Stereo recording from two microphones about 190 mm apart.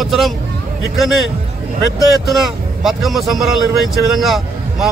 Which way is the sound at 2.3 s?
Centre (ahead or behind).